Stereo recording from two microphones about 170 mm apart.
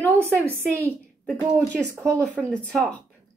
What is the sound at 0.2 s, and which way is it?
Speech, 15° right (ahead or behind).